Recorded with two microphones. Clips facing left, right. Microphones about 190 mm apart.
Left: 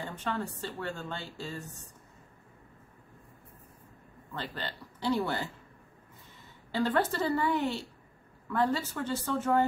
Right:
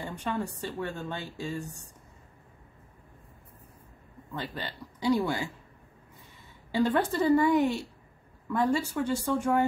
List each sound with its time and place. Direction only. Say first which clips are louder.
0.0 s a woman's voice: right 2 dB; 15° right (ahead or behind)
4.3 s a woman's voice: right 2 dB; 15° right (ahead or behind)
6.7 s a woman's voice: right 3 dB; 15° right (ahead or behind)